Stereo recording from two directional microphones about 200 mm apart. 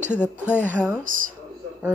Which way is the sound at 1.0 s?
45° right (ahead or behind).